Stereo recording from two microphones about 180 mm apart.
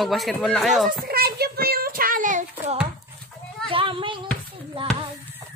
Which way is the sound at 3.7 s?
30° right (ahead or behind).